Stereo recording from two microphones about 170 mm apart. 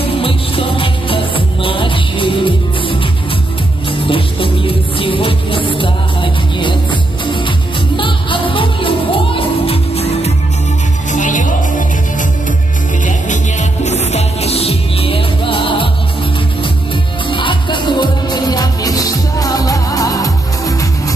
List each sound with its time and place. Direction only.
0.2 s music: 30° left (ahead or behind)
11.1 s music: 50° left (ahead or behind)
13.0 s music: 45° left (ahead or behind); by 20.7 s 20° left (ahead or behind)